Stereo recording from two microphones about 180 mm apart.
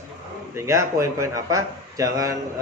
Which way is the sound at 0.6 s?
15° right (ahead or behind).